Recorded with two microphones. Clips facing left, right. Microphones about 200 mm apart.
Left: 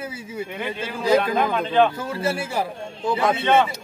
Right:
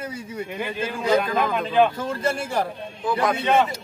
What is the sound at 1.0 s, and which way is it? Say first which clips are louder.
Speech: left 2 dB; 5° left (ahead or behind).